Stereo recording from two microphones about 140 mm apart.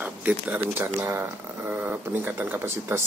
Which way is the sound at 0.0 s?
10° right (ahead or behind).